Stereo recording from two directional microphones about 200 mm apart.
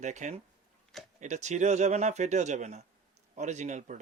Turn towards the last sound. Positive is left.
turn(degrees=-35)  # may be behind; listen again after turning